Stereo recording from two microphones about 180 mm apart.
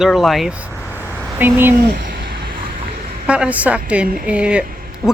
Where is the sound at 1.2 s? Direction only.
10° right (ahead or behind).